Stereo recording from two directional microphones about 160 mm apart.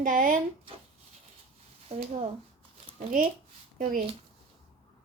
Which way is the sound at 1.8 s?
45° right (ahead or behind).